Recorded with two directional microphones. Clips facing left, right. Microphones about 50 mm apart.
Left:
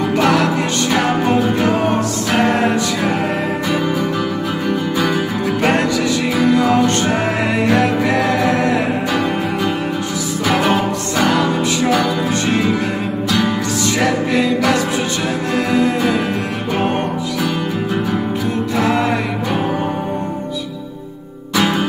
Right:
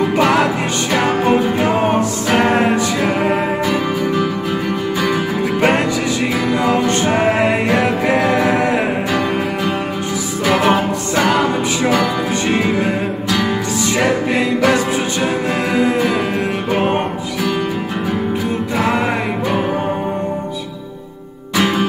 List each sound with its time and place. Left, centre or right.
0.2 s music: centre
5.6 s music: centre
6.3 s music: centre
6.6 s music: centre
7.4 s music: right
9.1 s music: centre
13.9 s music: right
16.0 s music: centre
18.8 s music: centre